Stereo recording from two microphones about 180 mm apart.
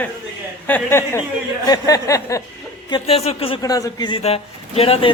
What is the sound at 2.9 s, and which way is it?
Speech, 30° left (ahead or behind).